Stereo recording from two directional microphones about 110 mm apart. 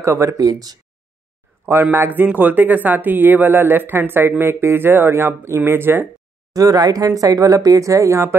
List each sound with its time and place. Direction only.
0.0 s speech: 25° right (ahead or behind)
1.7 s speech: 20° right (ahead or behind)
6.5 s speech: 35° right (ahead or behind)